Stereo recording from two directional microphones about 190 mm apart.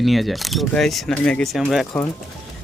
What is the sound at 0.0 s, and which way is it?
Speech, centre (ahead or behind).